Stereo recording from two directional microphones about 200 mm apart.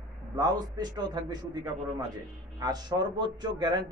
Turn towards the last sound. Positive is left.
turn(degrees=-20)  # may be behind; listen again after turning